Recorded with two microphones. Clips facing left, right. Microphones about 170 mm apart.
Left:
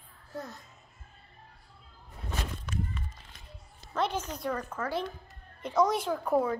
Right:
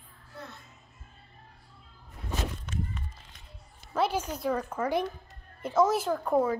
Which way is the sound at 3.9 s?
10° right (ahead or behind).